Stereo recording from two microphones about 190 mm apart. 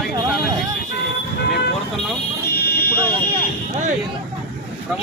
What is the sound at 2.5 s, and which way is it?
Fire alarm, 55° left (ahead or behind).